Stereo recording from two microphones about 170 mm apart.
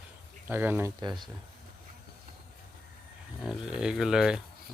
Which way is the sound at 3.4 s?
5° right (ahead or behind).